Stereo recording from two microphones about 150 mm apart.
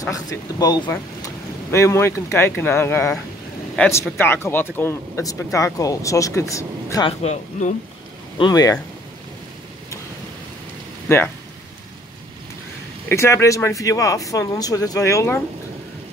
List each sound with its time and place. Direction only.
0.0 s speech: 25° left (ahead or behind)
0.8 s speech: 15° left (ahead or behind)
7.1 s speech: 50° left (ahead or behind)
8.4 s speech: 25° left (ahead or behind)
11.1 s speech: 15° left (ahead or behind)
13.1 s speech: 20° left (ahead or behind)